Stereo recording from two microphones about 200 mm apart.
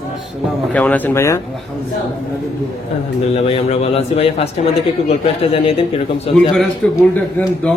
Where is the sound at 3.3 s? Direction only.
30° left (ahead or behind).